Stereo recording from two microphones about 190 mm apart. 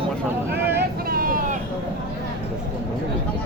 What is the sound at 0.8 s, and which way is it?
Vehicle, 50° right (ahead or behind).